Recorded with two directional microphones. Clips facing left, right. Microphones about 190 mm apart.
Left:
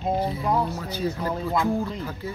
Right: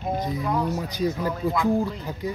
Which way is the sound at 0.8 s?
15° right (ahead or behind).